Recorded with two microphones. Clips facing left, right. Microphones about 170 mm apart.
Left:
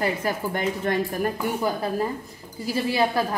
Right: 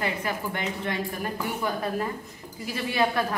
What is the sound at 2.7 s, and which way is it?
Speech, 30° left (ahead or behind).